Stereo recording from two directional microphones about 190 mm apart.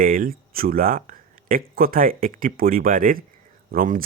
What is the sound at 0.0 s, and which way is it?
Speech, 50° right (ahead or behind).